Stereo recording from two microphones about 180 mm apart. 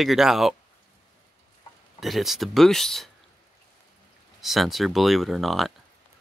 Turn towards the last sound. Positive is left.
turn(degrees=0)  # may be behind; listen again after turning